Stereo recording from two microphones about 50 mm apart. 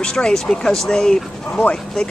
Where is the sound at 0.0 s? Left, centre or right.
Centre.